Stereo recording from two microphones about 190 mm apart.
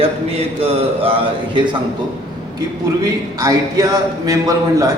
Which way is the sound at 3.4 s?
20° right (ahead or behind).